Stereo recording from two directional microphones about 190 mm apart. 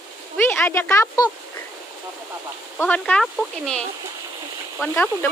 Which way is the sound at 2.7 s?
10° left (ahead or behind).